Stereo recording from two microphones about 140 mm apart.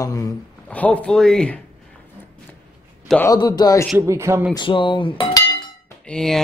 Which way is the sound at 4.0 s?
20° right (ahead or behind).